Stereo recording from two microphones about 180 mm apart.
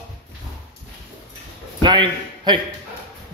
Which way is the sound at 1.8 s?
25° right (ahead or behind).